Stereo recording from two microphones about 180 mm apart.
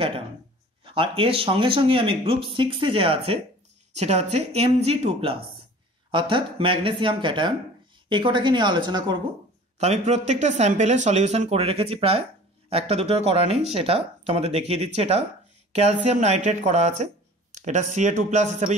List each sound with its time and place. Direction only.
0.8 s speech: 30° right (ahead or behind)
9.8 s speech: 40° right (ahead or behind)